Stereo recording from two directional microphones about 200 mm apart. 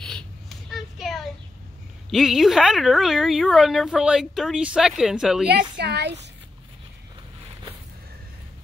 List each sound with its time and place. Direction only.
0.0 s a sound: 5° left (ahead or behind)
2.0 s a woman's voice: centre (ahead or behind)
5.5 s a woman's voice: 55° right (ahead or behind)